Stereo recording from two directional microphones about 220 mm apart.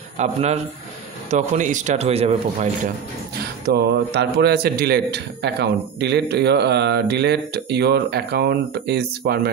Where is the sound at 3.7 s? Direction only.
50° right (ahead or behind).